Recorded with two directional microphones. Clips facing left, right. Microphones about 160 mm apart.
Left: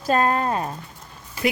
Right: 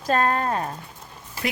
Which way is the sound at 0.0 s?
10° left (ahead or behind).